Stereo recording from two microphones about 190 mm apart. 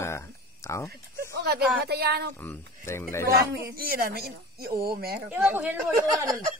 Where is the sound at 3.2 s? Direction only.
50° right (ahead or behind).